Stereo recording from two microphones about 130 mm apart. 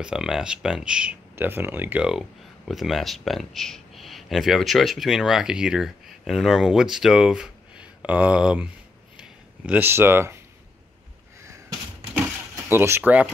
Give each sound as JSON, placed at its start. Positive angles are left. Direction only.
{"t": 0.0, "sound": "speech", "side_deg": -5}
{"t": 9.1, "sound": "a sound", "side_deg": -5}
{"t": 12.6, "sound": "speech", "side_deg": -20}